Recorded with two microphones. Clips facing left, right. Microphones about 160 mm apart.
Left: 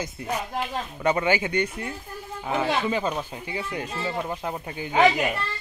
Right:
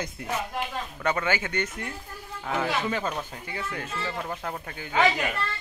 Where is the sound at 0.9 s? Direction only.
15° left (ahead or behind).